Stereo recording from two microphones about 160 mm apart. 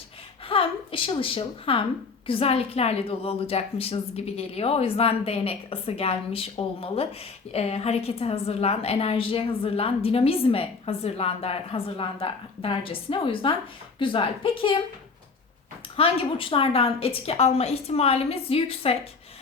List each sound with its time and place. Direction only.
0.4 s a woman's voice: 35° left (ahead or behind)
16.0 s a woman's voice: 35° left (ahead or behind)